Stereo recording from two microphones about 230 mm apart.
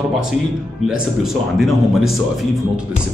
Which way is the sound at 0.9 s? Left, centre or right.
Centre.